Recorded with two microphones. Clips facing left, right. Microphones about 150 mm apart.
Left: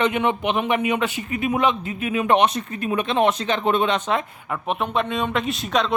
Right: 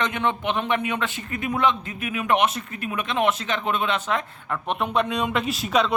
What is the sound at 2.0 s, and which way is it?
Speech, 30° left (ahead or behind).